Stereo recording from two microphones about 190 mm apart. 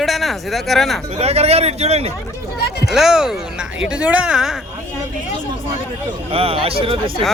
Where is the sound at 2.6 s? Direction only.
55° left (ahead or behind).